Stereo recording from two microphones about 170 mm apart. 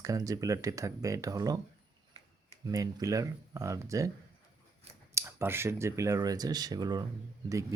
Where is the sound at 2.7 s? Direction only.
20° right (ahead or behind).